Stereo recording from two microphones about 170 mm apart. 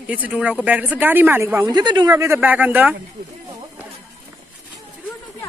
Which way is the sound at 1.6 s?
25° right (ahead or behind).